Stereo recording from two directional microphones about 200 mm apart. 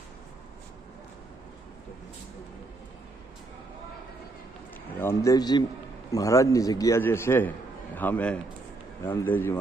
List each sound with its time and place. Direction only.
4.9 s a man's voice: 15° left (ahead or behind)